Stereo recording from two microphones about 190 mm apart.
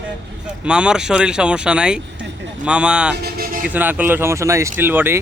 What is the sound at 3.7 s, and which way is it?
Speech, 10° right (ahead or behind).